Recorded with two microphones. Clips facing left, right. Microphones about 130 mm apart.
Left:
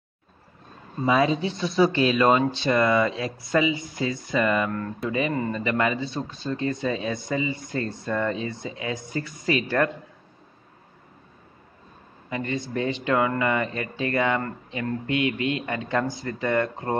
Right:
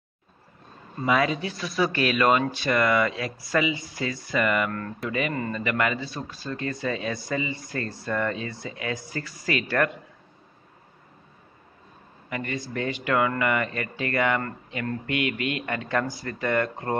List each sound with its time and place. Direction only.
1.0 s speech: 25° left (ahead or behind)
12.3 s speech: 20° left (ahead or behind)